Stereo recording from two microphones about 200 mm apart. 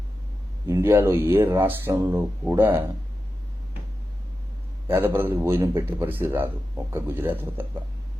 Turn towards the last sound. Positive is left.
turn(degrees=-10)  # may be behind; listen again after turning